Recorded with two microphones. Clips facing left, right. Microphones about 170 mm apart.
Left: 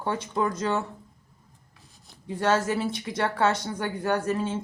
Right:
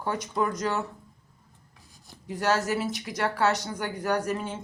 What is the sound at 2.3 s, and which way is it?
Speech, 25° left (ahead or behind).